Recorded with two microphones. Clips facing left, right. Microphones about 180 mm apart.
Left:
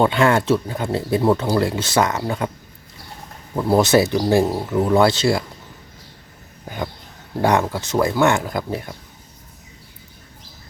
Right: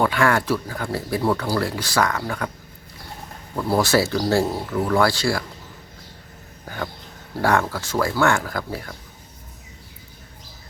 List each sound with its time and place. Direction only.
0.0 s speech: 20° left (ahead or behind)
3.5 s speech: 20° left (ahead or behind)
7.4 s speech: 20° left (ahead or behind)